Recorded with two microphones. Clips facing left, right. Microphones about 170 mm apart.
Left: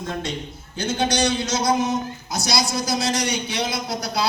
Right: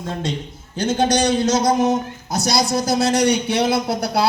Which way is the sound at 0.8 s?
45° right (ahead or behind).